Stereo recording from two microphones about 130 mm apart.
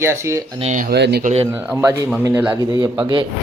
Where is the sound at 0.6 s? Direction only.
75° right (ahead or behind).